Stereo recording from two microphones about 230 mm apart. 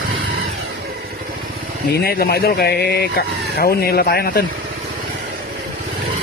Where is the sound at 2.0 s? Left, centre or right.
Left.